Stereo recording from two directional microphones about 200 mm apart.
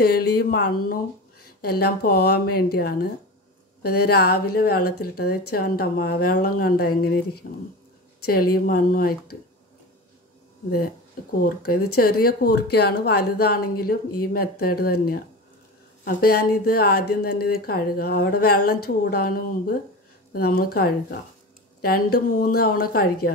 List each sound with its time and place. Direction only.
0.0 s speech: 50° left (ahead or behind)
11.9 s speech: 50° left (ahead or behind)